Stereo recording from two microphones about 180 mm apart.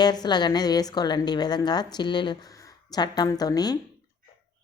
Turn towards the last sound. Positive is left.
turn(degrees=20)  # may be behind; listen again after turning